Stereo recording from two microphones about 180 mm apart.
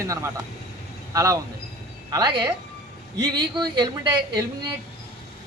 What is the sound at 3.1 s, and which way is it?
A woman's voice, 25° right (ahead or behind).